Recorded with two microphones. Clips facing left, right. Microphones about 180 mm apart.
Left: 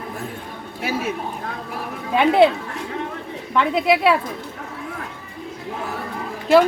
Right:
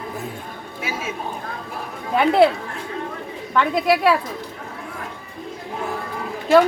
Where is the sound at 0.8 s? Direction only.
65° left (ahead or behind).